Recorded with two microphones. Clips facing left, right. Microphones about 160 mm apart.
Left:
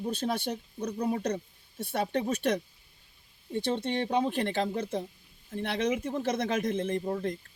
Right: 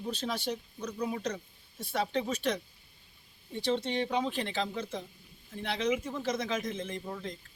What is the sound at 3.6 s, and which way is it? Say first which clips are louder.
Speech: left 1 dB; 55° left (ahead or behind).